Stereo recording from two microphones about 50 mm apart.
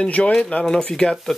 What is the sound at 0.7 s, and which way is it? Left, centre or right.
Speech, centre.